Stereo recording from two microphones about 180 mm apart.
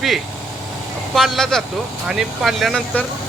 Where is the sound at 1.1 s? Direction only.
Centre (ahead or behind).